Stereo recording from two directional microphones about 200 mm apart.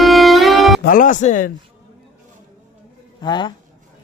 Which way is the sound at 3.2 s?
20° left (ahead or behind).